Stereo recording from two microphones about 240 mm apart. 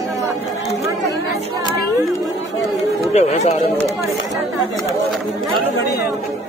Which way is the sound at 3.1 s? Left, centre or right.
Left.